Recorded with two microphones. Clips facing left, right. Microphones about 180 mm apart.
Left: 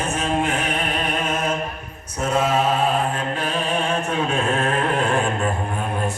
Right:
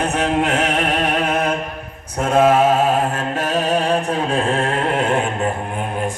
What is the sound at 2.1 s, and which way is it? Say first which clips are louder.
Mantra: right 6 dB; 55° right (ahead or behind).